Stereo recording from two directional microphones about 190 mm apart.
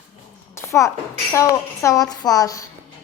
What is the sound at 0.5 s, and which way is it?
A child's voice, 15° left (ahead or behind).